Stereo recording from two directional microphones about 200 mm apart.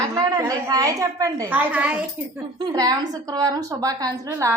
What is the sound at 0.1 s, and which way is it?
A woman's voice, 15° right (ahead or behind).